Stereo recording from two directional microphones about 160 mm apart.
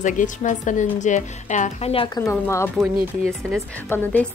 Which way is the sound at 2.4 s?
15° left (ahead or behind).